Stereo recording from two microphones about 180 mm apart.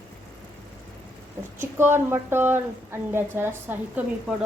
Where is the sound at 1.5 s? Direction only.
15° right (ahead or behind).